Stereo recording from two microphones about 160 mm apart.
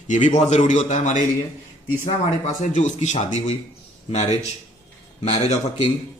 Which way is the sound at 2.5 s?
50° left (ahead or behind).